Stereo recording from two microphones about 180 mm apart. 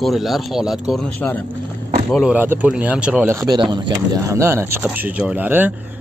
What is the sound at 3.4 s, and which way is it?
Speech, 25° right (ahead or behind).